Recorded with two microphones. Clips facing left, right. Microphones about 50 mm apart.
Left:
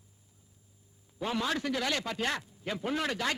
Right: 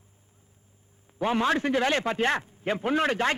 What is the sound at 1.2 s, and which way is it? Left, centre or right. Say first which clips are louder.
A man's voice: right 7 dB; right.